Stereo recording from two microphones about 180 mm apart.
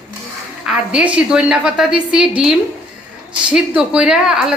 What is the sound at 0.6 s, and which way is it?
A woman's voice, 5° right (ahead or behind).